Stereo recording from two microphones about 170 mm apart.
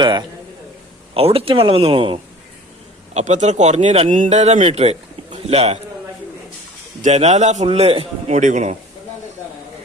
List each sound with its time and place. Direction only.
0.0 s a sound: 25° right (ahead or behind)
1.1 s speech: 35° right (ahead or behind)
3.2 s speech: 45° right (ahead or behind)
7.0 s speech: 40° right (ahead or behind)
8.4 s a man's voice: 45° right (ahead or behind)